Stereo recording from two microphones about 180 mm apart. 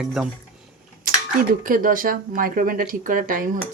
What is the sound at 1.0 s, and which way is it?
Speech, 50° right (ahead or behind).